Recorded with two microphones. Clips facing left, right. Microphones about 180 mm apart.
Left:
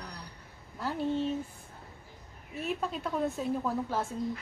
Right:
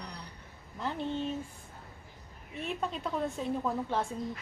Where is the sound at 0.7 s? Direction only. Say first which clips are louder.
Left 3 dB; 5° left (ahead or behind).